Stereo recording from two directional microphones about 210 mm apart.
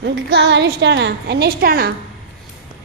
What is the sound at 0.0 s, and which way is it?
A woman's voice, 55° right (ahead or behind).